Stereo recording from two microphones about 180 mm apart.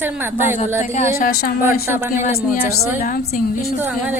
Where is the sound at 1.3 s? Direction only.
55° left (ahead or behind).